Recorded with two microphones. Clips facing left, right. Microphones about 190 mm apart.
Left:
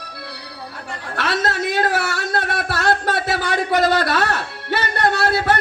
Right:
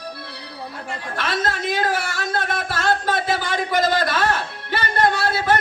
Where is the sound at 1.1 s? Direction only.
70° left (ahead or behind).